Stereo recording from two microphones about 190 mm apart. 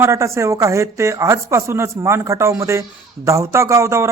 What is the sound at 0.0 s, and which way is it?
A man's voice, 15° right (ahead or behind).